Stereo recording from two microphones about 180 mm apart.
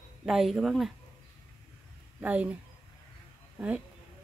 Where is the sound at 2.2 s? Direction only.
10° right (ahead or behind).